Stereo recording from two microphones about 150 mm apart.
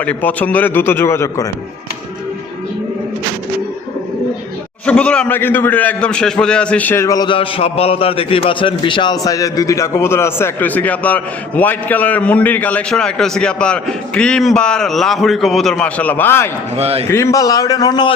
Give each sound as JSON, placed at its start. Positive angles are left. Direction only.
{"t": 0.0, "sound": "a man's voice", "side_deg": 10}
{"t": 4.9, "sound": "a man's voice", "side_deg": 10}
{"t": 16.7, "sound": "a man's voice", "side_deg": -40}
{"t": 17.1, "sound": "a man's voice", "side_deg": 20}